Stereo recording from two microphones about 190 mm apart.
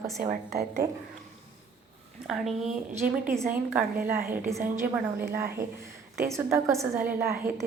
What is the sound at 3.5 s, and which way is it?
A woman's voice, 10° right (ahead or behind).